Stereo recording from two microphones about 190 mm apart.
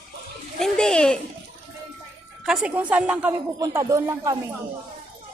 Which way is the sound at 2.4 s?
5° right (ahead or behind).